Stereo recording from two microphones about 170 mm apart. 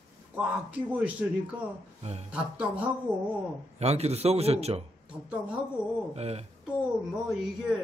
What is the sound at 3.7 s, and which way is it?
A man's voice, 40° right (ahead or behind).